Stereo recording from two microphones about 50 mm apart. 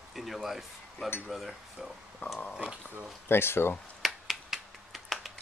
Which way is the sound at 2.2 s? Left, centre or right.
Left.